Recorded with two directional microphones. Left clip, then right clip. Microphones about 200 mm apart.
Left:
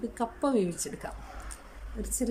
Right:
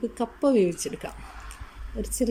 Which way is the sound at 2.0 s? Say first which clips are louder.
Right 6 dB; 5° right (ahead or behind).